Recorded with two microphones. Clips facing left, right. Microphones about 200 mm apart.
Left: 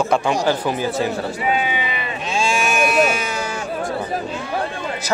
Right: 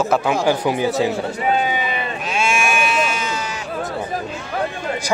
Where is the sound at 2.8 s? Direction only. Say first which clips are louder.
Left 4 dB; 50° left (ahead or behind).